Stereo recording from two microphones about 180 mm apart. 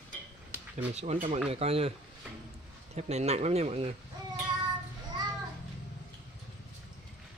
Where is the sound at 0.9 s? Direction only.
40° right (ahead or behind).